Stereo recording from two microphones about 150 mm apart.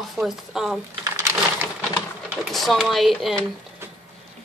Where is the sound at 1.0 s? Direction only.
20° right (ahead or behind).